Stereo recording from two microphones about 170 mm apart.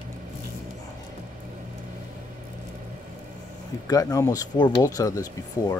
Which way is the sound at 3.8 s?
20° left (ahead or behind).